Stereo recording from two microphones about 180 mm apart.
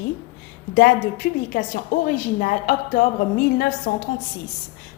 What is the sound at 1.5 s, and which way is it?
A woman's voice, 55° left (ahead or behind).